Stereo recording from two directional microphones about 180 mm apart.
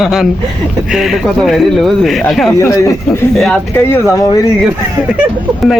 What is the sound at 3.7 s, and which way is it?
Speech, 15° left (ahead or behind).